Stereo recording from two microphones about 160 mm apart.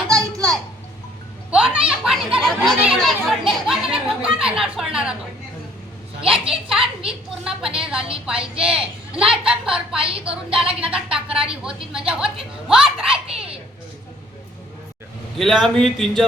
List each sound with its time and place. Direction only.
0.1 s a sound: 20° right (ahead or behind)
1.5 s children playing: 5° right (ahead or behind)
1.9 s a child's voice: 5° right (ahead or behind)
6.2 s a woman's voice: 35° right (ahead or behind)
7.1 s a woman's voice: 5° right (ahead or behind)
10.0 s a woman's voice: 35° right (ahead or behind)
10.2 s a woman's voice: 5° right (ahead or behind)
15.4 s a woman's voice: centre (ahead or behind)